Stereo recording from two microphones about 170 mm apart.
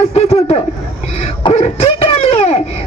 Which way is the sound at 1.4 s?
30° left (ahead or behind).